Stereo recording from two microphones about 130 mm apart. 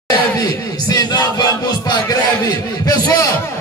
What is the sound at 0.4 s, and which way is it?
Music, 30° left (ahead or behind).